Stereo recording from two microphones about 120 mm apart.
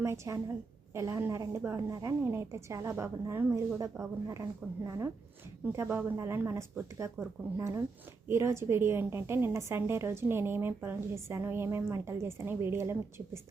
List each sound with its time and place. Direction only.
0.0 s a woman's voice: 25° right (ahead or behind)